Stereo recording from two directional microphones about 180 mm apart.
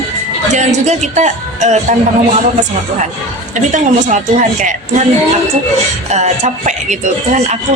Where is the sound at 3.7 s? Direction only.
45° right (ahead or behind).